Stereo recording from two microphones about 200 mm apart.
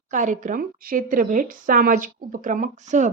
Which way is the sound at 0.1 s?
40° right (ahead or behind).